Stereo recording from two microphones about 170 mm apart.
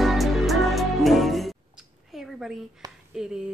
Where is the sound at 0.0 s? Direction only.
Centre (ahead or behind).